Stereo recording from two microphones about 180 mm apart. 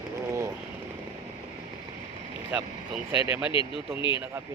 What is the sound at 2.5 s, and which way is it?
Speech, 10° right (ahead or behind).